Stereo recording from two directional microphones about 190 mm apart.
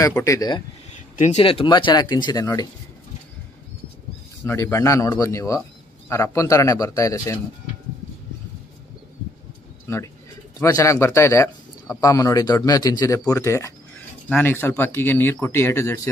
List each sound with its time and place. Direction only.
0.0 s speech: 15° left (ahead or behind)
1.1 s speech: 35° left (ahead or behind); by 2.7 s 20° left (ahead or behind)
4.5 s speech: 15° left (ahead or behind)
10.6 s speech: 15° left (ahead or behind)